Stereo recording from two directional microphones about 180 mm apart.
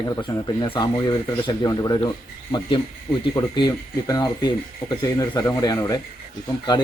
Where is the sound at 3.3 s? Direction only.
25° left (ahead or behind).